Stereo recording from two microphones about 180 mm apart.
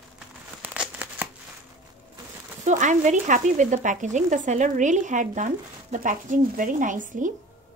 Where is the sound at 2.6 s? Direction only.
40° right (ahead or behind).